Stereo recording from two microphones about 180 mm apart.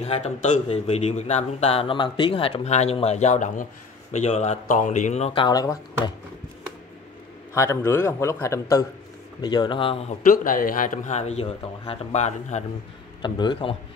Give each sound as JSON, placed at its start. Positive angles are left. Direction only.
{"t": 0.0, "sound": "speech", "side_deg": 40}
{"t": 7.5, "sound": "a man's voice", "side_deg": 15}
{"t": 10.2, "sound": "a man's voice", "side_deg": 50}
{"t": 13.2, "sound": "speech", "side_deg": 25}